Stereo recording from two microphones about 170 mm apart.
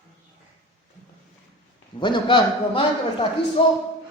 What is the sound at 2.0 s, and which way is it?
Speech, 30° left (ahead or behind).